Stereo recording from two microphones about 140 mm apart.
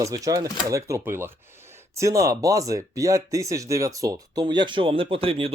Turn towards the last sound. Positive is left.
turn(degrees=-40)  # may be behind; listen again after turning